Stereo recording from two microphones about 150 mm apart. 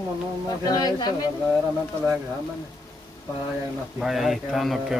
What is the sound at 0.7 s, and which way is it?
Speech, 25° left (ahead or behind).